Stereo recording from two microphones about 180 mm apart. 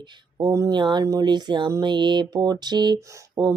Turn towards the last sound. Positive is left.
turn(degrees=-20)  # may be behind; listen again after turning